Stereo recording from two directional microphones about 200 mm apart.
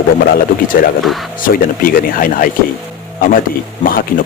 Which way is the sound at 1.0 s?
Centre (ahead or behind).